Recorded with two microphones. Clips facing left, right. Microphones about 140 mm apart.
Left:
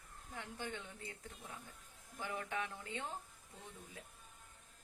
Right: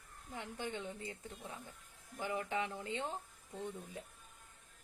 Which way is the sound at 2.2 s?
15° right (ahead or behind).